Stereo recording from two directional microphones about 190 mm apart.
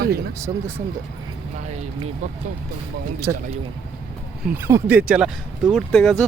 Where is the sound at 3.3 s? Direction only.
20° right (ahead or behind).